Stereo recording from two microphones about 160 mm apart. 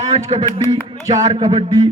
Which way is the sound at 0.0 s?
45° right (ahead or behind).